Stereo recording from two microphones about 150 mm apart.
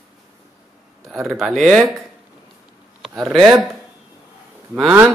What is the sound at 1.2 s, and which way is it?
Speech, centre (ahead or behind).